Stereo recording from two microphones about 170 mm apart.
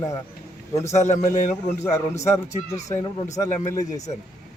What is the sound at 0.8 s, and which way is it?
A man's voice, 45° left (ahead or behind).